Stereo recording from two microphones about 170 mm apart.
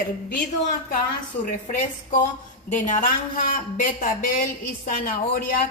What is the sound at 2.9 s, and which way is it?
A woman's voice, 50° left (ahead or behind).